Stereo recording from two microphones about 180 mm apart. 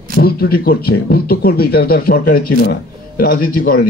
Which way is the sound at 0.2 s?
55° left (ahead or behind).